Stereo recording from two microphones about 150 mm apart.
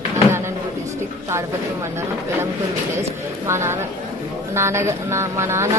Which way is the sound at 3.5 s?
15° right (ahead or behind).